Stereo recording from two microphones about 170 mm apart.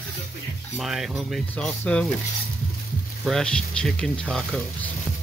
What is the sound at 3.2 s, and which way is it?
Speech, centre (ahead or behind).